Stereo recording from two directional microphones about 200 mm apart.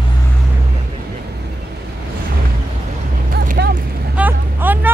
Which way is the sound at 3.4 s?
50° right (ahead or behind).